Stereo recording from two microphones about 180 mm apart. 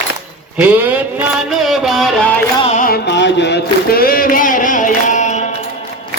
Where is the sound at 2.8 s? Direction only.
65° left (ahead or behind); by 5.4 s 45° left (ahead or behind).